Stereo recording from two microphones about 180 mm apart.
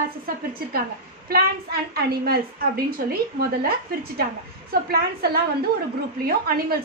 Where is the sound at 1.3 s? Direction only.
60° right (ahead or behind).